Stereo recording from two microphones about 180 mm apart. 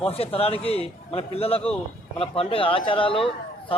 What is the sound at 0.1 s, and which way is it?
Speech, 30° left (ahead or behind).